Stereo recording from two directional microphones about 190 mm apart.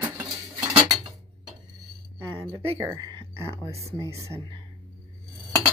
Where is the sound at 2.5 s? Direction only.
15° right (ahead or behind).